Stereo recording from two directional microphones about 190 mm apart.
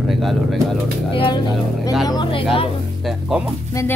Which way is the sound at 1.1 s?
25° left (ahead or behind).